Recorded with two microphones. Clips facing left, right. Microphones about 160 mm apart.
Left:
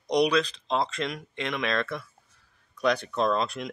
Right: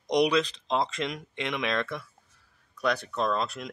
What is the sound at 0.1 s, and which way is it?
Speech, 20° right (ahead or behind).